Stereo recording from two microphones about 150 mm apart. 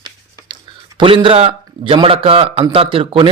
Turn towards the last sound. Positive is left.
turn(degrees=-35)  # may be behind; listen again after turning